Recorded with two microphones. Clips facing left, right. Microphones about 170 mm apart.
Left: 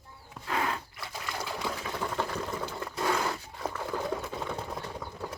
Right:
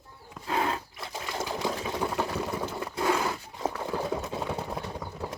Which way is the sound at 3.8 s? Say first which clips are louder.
Right 2 dB; 20° right (ahead or behind).